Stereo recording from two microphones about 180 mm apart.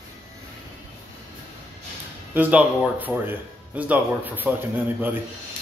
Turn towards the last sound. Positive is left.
turn(degrees=-10)  # may be behind; listen again after turning